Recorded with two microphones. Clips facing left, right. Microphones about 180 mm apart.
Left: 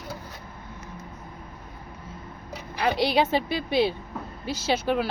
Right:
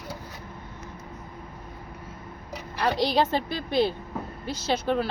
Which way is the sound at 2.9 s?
65° left (ahead or behind).